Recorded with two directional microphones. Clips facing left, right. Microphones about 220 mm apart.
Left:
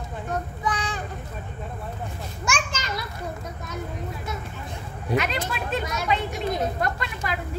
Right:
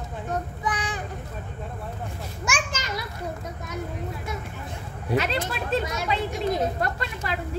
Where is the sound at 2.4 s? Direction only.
15° right (ahead or behind).